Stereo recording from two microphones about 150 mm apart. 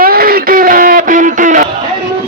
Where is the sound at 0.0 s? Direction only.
80° right; by 1.6 s 60° right (ahead or behind).